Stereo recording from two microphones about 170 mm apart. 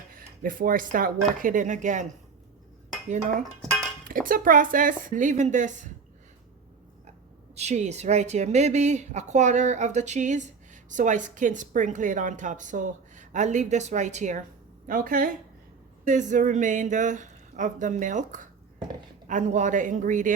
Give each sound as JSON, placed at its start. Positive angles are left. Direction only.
{"t": 0.2, "sound": "a woman's voice", "side_deg": -55}
{"t": 4.3, "sound": "a woman's voice", "side_deg": -55}
{"t": 7.5, "sound": "a woman's voice", "side_deg": -40}